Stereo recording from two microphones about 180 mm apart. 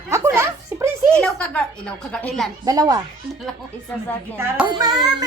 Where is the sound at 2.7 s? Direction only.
20° right (ahead or behind).